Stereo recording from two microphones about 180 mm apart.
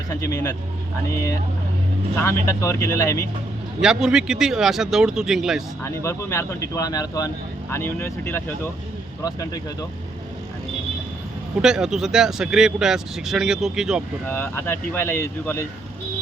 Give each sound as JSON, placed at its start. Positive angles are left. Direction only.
{"t": 0.2, "sound": "speech", "side_deg": 15}
{"t": 2.2, "sound": "speech", "side_deg": 15}
{"t": 3.8, "sound": "speech", "side_deg": -5}
{"t": 5.8, "sound": "speech", "side_deg": 15}
{"t": 11.6, "sound": "speech", "side_deg": -5}
{"t": 14.3, "sound": "speech", "side_deg": 10}